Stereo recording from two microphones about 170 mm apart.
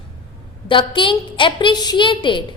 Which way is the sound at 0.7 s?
30° left (ahead or behind).